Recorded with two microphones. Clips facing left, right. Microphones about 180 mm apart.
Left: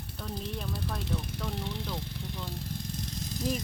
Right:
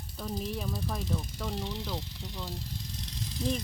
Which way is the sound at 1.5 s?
55° left (ahead or behind).